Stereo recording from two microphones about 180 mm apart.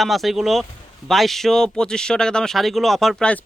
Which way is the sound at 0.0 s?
Centre (ahead or behind).